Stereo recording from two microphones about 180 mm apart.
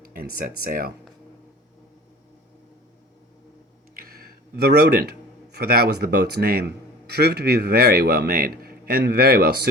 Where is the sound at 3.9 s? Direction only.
55° right (ahead or behind).